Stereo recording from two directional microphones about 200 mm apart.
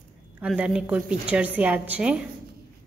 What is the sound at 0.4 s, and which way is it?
A woman's voice, 5° right (ahead or behind).